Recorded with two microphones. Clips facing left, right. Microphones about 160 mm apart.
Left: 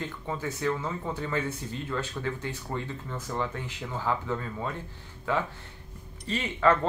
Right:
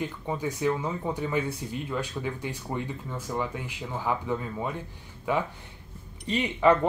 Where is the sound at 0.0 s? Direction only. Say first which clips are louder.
Right 3 dB; 15° right (ahead or behind).